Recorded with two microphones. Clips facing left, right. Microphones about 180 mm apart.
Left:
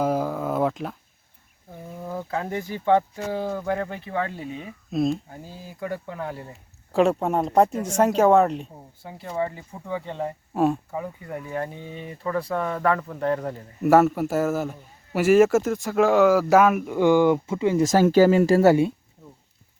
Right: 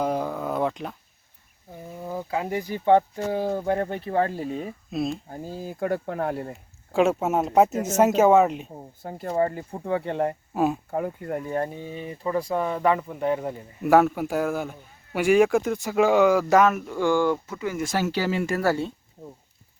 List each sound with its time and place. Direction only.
0.0 s a sound: 5° left (ahead or behind)
2.0 s speech: 10° right (ahead or behind); by 4.7 s 40° right (ahead or behind)
4.9 s a man's voice: centre (ahead or behind)
5.3 s speech: 45° right (ahead or behind)
6.9 s a man's voice: centre (ahead or behind)
9.0 s speech: 45° right (ahead or behind)
10.5 s speech: centre (ahead or behind)
10.9 s speech: 55° right (ahead or behind)
12.0 s speech: 20° right (ahead or behind)
13.8 s a man's voice: centre (ahead or behind); by 17.8 s 25° left (ahead or behind)
17.8 s speech: 45° left (ahead or behind)
18.4 s speech: 25° left (ahead or behind)